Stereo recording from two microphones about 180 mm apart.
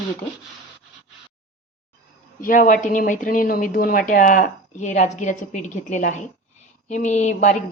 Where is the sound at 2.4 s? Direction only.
50° left (ahead or behind).